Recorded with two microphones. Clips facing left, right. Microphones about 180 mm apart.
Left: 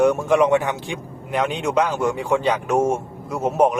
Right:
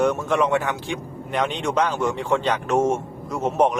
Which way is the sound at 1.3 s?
5° left (ahead or behind).